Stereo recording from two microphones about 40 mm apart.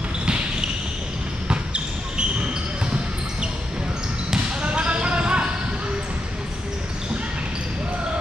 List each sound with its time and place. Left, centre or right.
0.2 s basketball bounce: right
4.6 s basketball bounce: right